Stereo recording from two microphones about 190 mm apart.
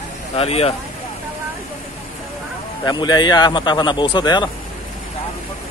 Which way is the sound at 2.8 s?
20° left (ahead or behind).